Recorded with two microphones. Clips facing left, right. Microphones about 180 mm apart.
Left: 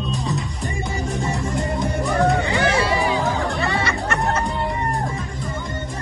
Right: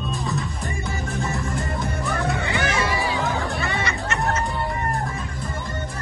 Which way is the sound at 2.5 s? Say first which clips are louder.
Left 4 dB; 30° left (ahead or behind).